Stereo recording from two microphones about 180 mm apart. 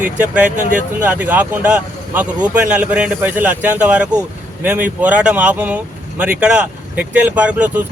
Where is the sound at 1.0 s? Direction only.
10° right (ahead or behind).